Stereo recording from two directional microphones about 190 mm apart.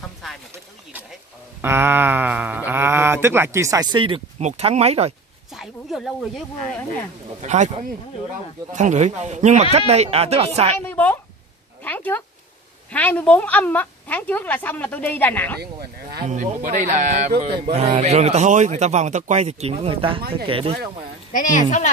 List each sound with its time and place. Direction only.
1.6 s speech: 10° right (ahead or behind); by 5.1 s 35° right (ahead or behind)
5.5 s speech: centre (ahead or behind)
7.4 s speech: 40° right (ahead or behind)
10.9 s a woman's voice: 10° left (ahead or behind)
15.6 s speech: 55° right (ahead or behind)
16.3 s speech: 40° right (ahead or behind)
21.3 s speech: 45° left (ahead or behind)